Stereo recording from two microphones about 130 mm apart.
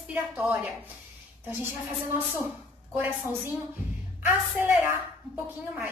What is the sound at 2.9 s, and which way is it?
A woman's voice, 15° right (ahead or behind).